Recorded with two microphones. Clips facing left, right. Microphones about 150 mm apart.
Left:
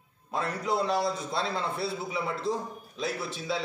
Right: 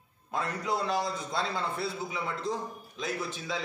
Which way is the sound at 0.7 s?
Centre (ahead or behind).